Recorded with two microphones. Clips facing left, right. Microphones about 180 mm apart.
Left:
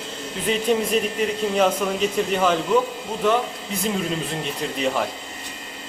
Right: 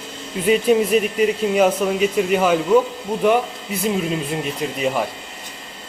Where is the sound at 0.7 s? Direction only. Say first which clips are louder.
Right 5 dB; 10° right (ahead or behind).